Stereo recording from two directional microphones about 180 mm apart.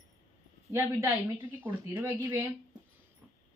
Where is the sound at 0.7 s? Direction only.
15° right (ahead or behind).